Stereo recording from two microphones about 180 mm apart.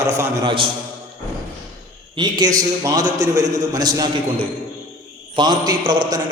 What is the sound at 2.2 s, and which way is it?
A man's voice, 25° right (ahead or behind).